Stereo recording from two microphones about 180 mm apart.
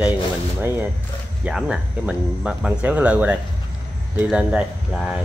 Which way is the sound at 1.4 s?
5° right (ahead or behind).